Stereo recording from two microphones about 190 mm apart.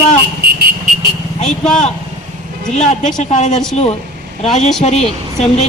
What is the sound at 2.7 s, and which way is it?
Speech, 40° left (ahead or behind).